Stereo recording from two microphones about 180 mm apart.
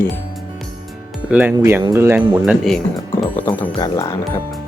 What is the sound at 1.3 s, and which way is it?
Speech, 10° right (ahead or behind).